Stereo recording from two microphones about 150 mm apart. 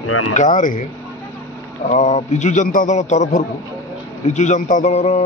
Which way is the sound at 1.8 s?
50° left (ahead or behind).